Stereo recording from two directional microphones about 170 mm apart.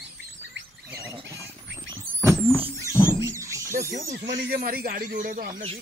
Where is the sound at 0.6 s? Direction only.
90° right.